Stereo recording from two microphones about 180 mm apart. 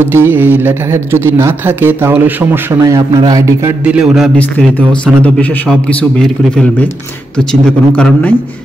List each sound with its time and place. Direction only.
0.0 s a man's voice: 15° right (ahead or behind)
4.4 s a man's voice: 10° left (ahead or behind)